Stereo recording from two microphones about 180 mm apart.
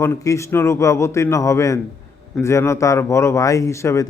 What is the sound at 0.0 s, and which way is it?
A man's voice, 15° left (ahead or behind).